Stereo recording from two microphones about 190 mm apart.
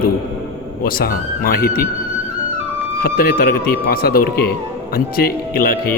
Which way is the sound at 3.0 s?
50° left (ahead or behind).